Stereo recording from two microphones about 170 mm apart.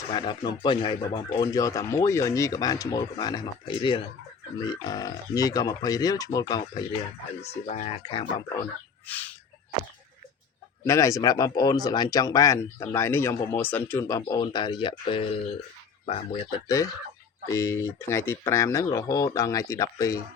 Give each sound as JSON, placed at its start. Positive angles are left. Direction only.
{"t": 0.1, "sound": "speech", "side_deg": 25}
{"t": 7.5, "sound": "speech", "side_deg": 40}
{"t": 9.0, "sound": "a sound", "side_deg": 10}
{"t": 10.8, "sound": "speech", "side_deg": 20}
{"t": 16.6, "sound": "speech", "side_deg": 20}